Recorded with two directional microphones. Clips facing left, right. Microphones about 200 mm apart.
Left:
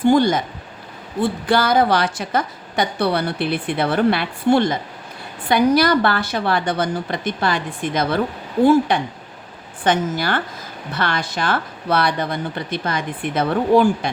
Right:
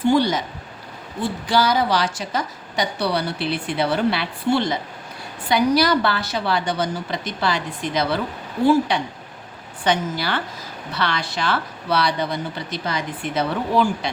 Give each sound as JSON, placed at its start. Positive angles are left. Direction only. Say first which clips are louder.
{"t": 0.1, "sound": "a woman's voice", "louder": "left 3 dB", "side_deg": 50}